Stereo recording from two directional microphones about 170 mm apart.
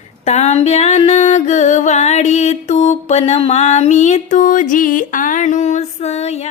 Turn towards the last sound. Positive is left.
turn(degrees=40)  # may be behind; listen again after turning